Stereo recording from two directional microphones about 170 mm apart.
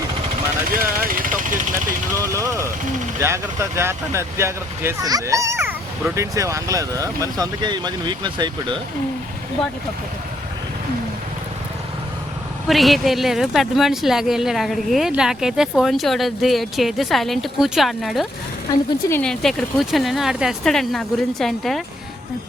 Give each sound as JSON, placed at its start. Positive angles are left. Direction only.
{"t": 0.8, "sound": "vehicle", "side_deg": -55}
{"t": 2.2, "sound": "speech", "side_deg": -15}
{"t": 12.6, "sound": "speech", "side_deg": 0}